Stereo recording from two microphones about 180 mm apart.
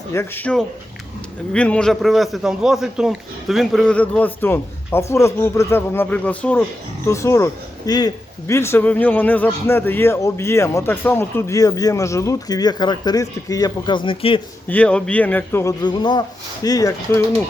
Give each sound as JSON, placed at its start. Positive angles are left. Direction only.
{"t": 0.1, "sound": "a man's voice", "side_deg": 10}
{"t": 14.7, "sound": "a man's voice", "side_deg": 5}
{"t": 15.8, "sound": "speech", "side_deg": 25}